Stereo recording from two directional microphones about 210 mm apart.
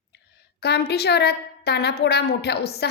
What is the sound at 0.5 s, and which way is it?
A woman's voice, 50° left (ahead or behind).